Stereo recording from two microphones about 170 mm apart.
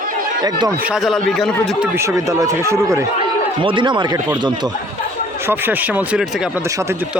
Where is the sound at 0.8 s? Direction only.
5° right (ahead or behind).